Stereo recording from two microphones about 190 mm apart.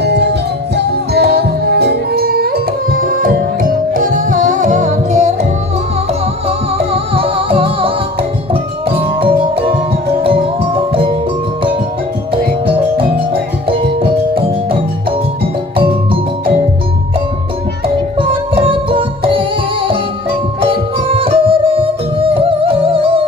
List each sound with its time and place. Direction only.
0.0 s music: 60° right (ahead or behind); by 5.5 s 35° right (ahead or behind)
6.8 s music: 30° right (ahead or behind)
15.7 s music: 30° right (ahead or behind)
17.8 s music: 30° right (ahead or behind)